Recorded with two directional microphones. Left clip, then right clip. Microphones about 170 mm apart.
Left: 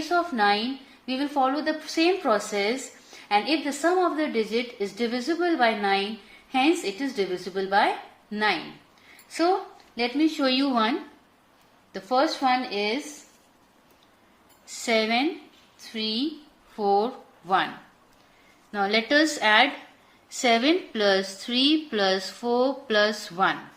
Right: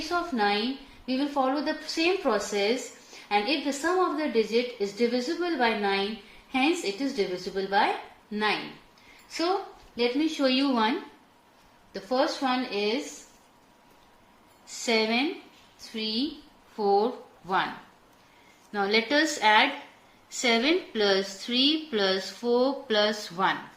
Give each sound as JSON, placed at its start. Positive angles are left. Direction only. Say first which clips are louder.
{"t": 0.1, "sound": "a woman's voice", "louder": "left 4 dB", "side_deg": 40}
{"t": 9.9, "sound": "speech", "louder": "left 2 dB", "side_deg": 45}
{"t": 11.9, "sound": "speech", "louder": "left 3 dB", "side_deg": 45}
{"t": 14.8, "sound": "a woman's voice", "louder": "left 2 dB", "side_deg": 40}
{"t": 16.7, "sound": "a woman's voice", "louder": "left 1 dB", "side_deg": 40}
{"t": 18.7, "sound": "a woman's voice", "louder": "left 2 dB", "side_deg": 35}